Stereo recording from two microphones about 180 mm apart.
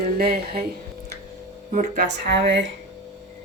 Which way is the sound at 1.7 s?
45° right (ahead or behind).